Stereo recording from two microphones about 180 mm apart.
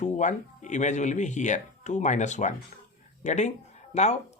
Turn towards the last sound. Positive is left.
turn(degrees=40)  # may be behind; listen again after turning